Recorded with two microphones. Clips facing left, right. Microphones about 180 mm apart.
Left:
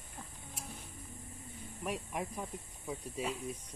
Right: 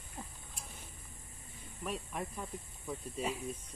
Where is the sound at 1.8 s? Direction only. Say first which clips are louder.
Left 1 dB; 15° left (ahead or behind).